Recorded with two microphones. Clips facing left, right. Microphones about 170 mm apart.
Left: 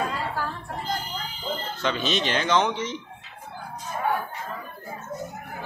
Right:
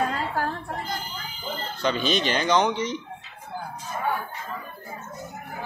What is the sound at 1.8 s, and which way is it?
Speech, centre (ahead or behind).